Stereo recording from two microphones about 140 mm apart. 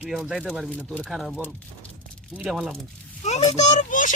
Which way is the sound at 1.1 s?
Centre (ahead or behind).